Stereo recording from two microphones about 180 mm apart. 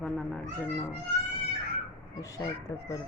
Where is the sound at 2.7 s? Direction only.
15° left (ahead or behind).